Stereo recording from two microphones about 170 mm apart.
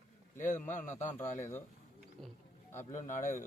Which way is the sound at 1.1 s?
15° left (ahead or behind).